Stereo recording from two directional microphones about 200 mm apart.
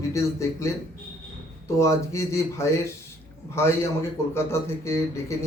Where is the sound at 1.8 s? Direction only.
15° left (ahead or behind).